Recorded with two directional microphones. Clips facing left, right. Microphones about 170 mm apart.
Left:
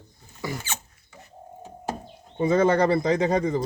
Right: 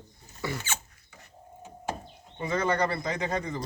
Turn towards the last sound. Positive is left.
turn(degrees=35)  # may be behind; listen again after turning